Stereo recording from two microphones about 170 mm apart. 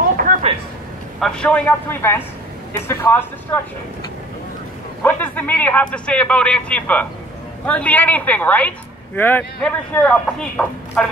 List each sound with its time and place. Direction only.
0.3 s a sound: 50° right (ahead or behind)
1.2 s a woman's voice: 5° left (ahead or behind)
5.0 s a woman's voice: 10° left (ahead or behind)